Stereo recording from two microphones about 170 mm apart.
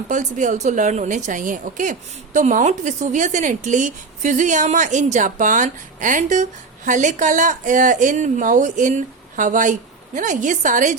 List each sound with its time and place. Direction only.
0.1 s a woman's voice: 45° right (ahead or behind)